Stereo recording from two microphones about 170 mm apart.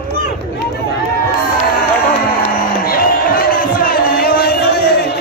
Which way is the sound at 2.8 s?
60° left (ahead or behind).